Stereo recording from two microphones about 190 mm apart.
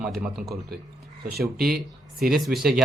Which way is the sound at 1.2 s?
55° right (ahead or behind).